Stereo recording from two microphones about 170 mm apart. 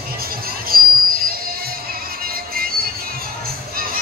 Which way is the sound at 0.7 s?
60° right (ahead or behind).